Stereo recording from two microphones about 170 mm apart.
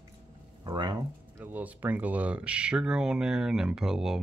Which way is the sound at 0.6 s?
25° right (ahead or behind).